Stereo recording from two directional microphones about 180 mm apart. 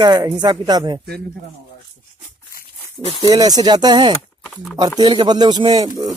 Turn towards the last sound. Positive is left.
turn(degrees=-20)  # may be behind; listen again after turning